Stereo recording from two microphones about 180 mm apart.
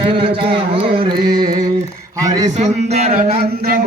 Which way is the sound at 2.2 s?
20° right (ahead or behind).